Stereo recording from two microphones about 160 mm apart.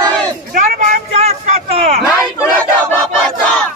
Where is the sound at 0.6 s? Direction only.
50° right (ahead or behind).